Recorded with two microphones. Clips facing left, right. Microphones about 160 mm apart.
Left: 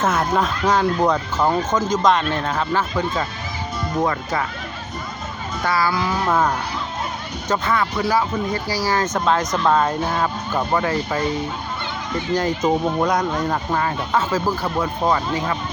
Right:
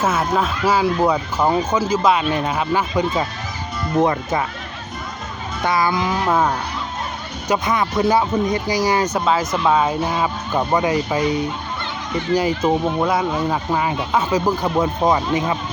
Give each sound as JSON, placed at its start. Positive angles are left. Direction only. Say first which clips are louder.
{"t": 0.0, "sound": "speech", "louder": "even", "side_deg": -5}
{"t": 5.6, "sound": "speech", "louder": "right 2 dB", "side_deg": -20}